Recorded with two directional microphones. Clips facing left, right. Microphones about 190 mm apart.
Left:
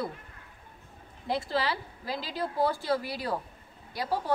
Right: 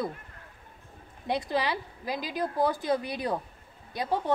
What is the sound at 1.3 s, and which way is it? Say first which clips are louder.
A woman's voice: right 1 dB; 20° right (ahead or behind).